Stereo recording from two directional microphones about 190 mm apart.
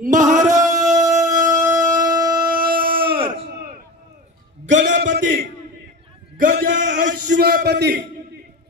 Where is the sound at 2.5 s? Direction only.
50° right (ahead or behind).